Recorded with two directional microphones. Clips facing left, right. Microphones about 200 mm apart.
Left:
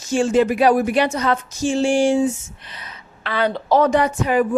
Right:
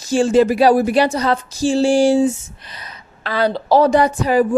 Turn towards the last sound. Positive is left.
turn(degrees=-35)  # may be behind; listen again after turning